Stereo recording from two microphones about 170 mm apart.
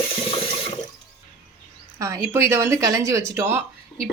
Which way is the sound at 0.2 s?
35° left (ahead or behind).